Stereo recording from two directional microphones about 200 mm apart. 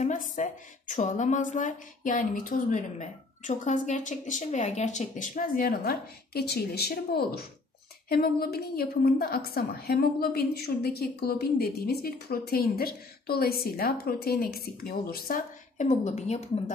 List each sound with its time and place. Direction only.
0.0 s a woman's voice: 40° left (ahead or behind)